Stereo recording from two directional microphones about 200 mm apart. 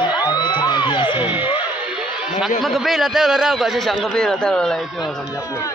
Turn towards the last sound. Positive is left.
turn(degrees=0)  # may be behind; listen again after turning